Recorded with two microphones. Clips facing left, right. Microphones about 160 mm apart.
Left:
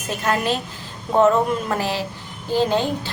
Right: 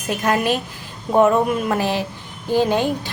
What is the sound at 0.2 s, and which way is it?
A woman's voice, 15° right (ahead or behind).